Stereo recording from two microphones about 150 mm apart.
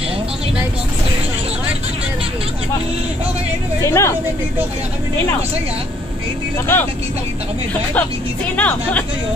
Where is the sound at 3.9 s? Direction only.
20° left (ahead or behind).